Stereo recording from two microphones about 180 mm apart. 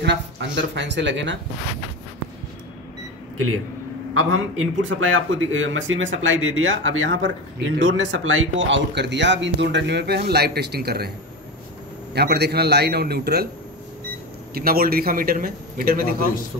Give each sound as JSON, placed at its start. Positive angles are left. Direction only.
{"t": 0.0, "sound": "speech", "side_deg": -80}
{"t": 4.7, "sound": "speech", "side_deg": -90}
{"t": 12.1, "sound": "a man's voice", "side_deg": -65}
{"t": 14.5, "sound": "a man's voice", "side_deg": -55}